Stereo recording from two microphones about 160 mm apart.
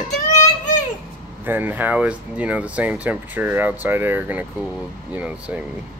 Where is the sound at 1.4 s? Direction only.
10° right (ahead or behind).